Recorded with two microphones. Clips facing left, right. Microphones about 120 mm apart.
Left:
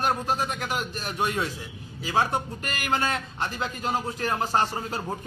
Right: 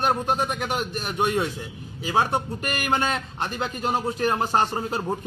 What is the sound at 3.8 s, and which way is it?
A man's voice, 20° right (ahead or behind).